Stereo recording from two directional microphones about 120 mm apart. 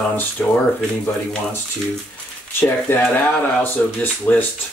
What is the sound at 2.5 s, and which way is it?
Speech, 15° left (ahead or behind).